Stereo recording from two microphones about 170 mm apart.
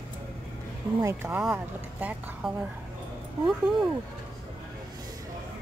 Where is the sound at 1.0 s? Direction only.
15° right (ahead or behind).